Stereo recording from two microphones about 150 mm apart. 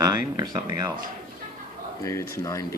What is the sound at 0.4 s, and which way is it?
Speech, 25° right (ahead or behind).